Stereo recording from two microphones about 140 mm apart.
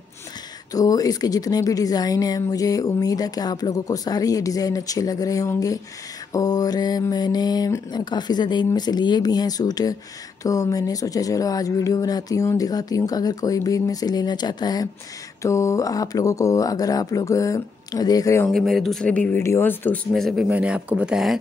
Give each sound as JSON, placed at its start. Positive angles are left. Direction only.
{"t": 0.7, "sound": "speech", "side_deg": 25}
{"t": 18.5, "sound": "speech", "side_deg": 0}
{"t": 20.1, "sound": "speech", "side_deg": 0}